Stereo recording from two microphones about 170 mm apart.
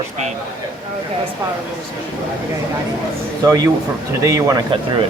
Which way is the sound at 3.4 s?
20° right (ahead or behind).